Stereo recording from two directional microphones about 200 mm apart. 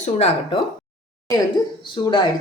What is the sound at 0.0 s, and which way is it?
Speech, 30° left (ahead or behind).